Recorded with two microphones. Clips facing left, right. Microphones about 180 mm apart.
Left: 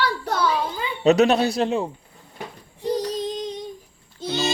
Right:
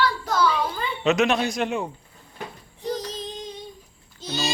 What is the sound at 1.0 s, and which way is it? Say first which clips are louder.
Speech: left 5 dB; 35° left (ahead or behind).